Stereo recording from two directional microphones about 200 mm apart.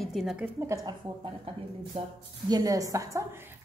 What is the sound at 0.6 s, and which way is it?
Speech, 15° right (ahead or behind).